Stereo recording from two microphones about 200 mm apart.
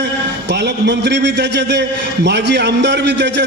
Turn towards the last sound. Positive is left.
turn(degrees=-60)  # may be behind; listen again after turning